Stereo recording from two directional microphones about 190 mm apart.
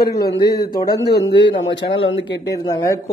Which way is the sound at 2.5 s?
15° left (ahead or behind).